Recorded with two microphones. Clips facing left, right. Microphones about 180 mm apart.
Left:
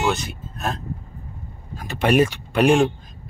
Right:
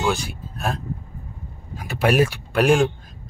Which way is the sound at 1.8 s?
5° right (ahead or behind).